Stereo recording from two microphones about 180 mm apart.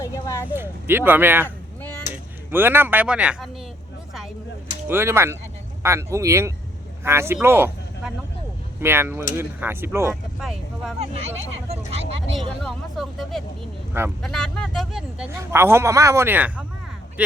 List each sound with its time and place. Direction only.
0.0 s a sound: 15° left (ahead or behind)
0.4 s speech: 10° right (ahead or behind)
1.5 s a sound: 10° left (ahead or behind)
2.5 s speech: 10° right (ahead or behind)
4.9 s speech: 15° right (ahead or behind)
11.0 s speech: 35° right (ahead or behind)
12.6 s speech: centre (ahead or behind)
15.3 s speech: 15° right (ahead or behind)